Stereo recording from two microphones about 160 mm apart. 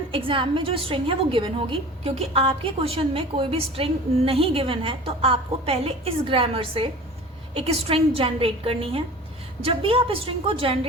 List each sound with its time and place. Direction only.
0.1 s a woman's voice: 35° right (ahead or behind)